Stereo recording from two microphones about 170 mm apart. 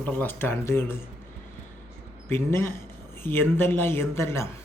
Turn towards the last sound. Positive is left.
turn(degrees=15)  # may be behind; listen again after turning